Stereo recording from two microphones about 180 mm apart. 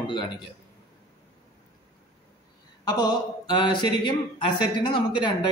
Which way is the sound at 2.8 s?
20° left (ahead or behind).